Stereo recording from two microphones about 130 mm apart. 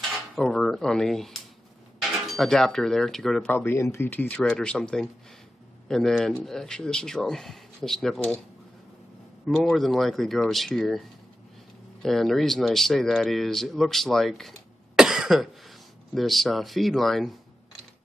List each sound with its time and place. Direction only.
0.1 s cutlery: centre (ahead or behind)
2.0 s speech: centre (ahead or behind)
3.4 s speech: 15° left (ahead or behind)
9.5 s speech: 5° left (ahead or behind)
15.0 s cough: 5° right (ahead or behind)
16.2 s speech: centre (ahead or behind)